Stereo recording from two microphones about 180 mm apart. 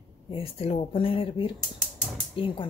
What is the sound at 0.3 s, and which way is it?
Speech, 30° left (ahead or behind).